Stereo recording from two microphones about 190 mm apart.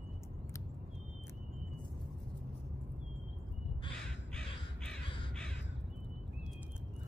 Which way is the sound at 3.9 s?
5° left (ahead or behind).